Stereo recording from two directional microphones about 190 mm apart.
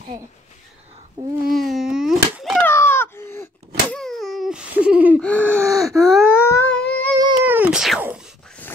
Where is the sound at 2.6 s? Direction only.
15° left (ahead or behind); by 5.2 s 5° right (ahead or behind).